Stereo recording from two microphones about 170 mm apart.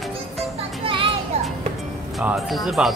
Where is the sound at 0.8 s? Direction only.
30° right (ahead or behind).